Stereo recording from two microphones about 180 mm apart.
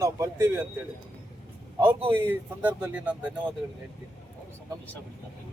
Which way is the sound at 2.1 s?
10° right (ahead or behind).